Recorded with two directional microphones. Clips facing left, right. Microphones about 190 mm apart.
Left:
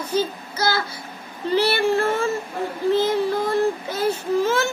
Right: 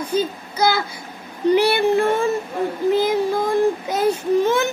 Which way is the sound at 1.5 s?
15° right (ahead or behind).